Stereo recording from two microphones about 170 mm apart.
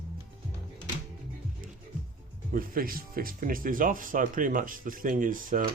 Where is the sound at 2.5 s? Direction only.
55° right (ahead or behind).